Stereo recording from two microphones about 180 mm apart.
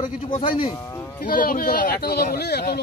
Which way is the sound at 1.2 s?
50° left (ahead or behind).